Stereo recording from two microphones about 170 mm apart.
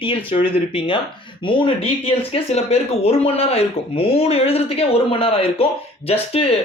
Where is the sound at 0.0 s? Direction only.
30° left (ahead or behind).